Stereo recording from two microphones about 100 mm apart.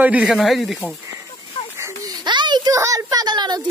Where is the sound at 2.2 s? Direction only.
50° right (ahead or behind).